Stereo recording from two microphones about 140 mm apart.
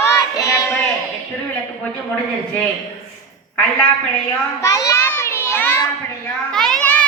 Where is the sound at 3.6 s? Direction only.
10° left (ahead or behind).